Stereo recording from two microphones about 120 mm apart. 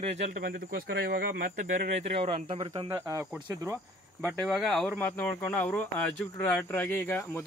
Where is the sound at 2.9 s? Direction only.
25° right (ahead or behind).